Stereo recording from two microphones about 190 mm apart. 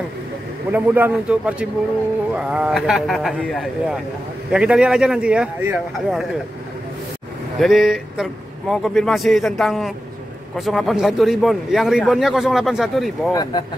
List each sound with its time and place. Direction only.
0.7 s a man's voice: 10° right (ahead or behind)
7.5 s a man's voice: centre (ahead or behind)
13.3 s speech: 20° left (ahead or behind)